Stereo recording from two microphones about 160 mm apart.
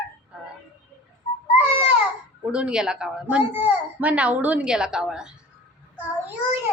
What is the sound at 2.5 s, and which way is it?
A woman's voice, 5° right (ahead or behind).